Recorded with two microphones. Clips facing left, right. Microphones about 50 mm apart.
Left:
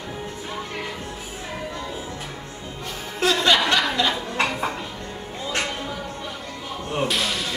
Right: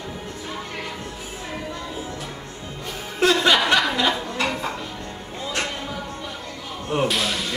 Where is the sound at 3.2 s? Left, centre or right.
Centre.